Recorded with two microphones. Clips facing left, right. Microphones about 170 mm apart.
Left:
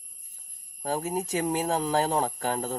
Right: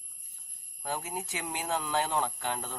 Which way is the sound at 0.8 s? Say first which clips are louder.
Left 7 dB; 40° left (ahead or behind).